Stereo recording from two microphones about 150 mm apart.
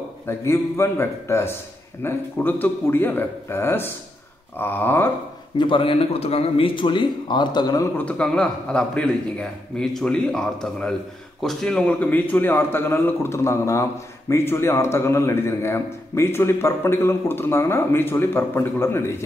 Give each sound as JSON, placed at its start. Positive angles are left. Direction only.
{"t": 0.3, "sound": "a man's voice", "side_deg": 15}
{"t": 5.6, "sound": "speech", "side_deg": 35}
{"t": 8.0, "sound": "a man's voice", "side_deg": 10}